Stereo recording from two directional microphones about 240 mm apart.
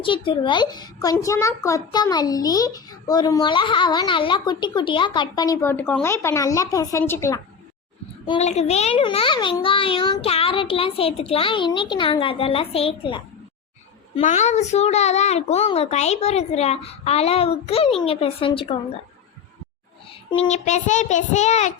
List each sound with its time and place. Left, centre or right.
0.0 s a child's voice: left
8.3 s a child's voice: left
20.3 s a child's voice: left